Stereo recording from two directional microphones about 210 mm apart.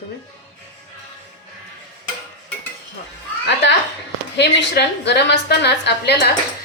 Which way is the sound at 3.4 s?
55° left (ahead or behind).